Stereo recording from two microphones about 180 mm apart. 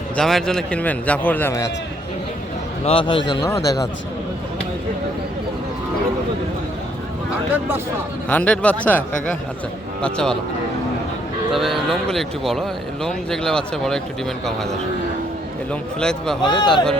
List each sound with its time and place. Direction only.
0.2 s a man's voice: centre (ahead or behind)
2.8 s speech: 30° left (ahead or behind)
3.4 s speech: 20° left (ahead or behind)
8.3 s a man's voice: 10° left (ahead or behind)
11.5 s speech: centre (ahead or behind)
16.4 s speech: 25° left (ahead or behind)